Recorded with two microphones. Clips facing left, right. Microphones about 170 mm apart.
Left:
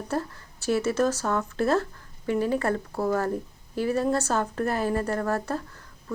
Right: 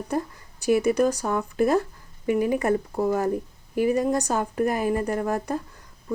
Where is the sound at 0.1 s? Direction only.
15° right (ahead or behind).